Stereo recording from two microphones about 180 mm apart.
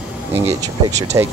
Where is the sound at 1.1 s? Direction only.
20° right (ahead or behind).